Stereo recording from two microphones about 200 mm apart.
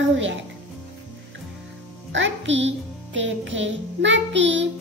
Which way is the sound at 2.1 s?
70° right (ahead or behind).